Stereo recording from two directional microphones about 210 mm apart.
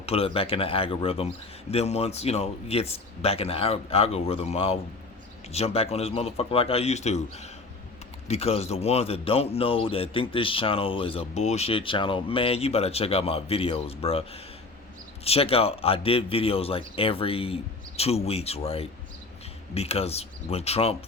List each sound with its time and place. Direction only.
0.0 s a man's voice: 30° left (ahead or behind)